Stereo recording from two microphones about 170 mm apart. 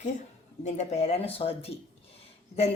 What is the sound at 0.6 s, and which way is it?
Speech, 40° left (ahead or behind).